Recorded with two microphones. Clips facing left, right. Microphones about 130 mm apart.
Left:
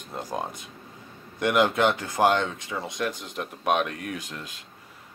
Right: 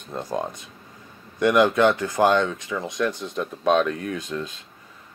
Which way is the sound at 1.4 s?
20° left (ahead or behind).